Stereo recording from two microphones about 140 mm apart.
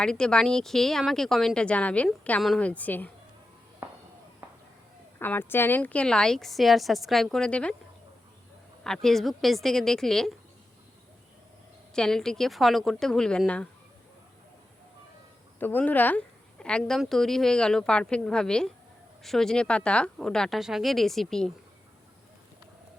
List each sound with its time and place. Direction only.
0.0 s a woman's voice: 5° left (ahead or behind)
3.8 s a sound: 20° right (ahead or behind)
5.2 s a woman's voice: 15° left (ahead or behind)
8.8 s a woman's voice: 5° left (ahead or behind)
11.9 s a woman's voice: 5° left (ahead or behind)
15.5 s a woman's voice: 15° left (ahead or behind)